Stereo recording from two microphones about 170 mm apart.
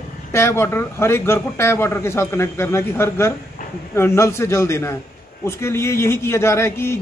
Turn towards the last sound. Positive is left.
turn(degrees=15)  # may be behind; listen again after turning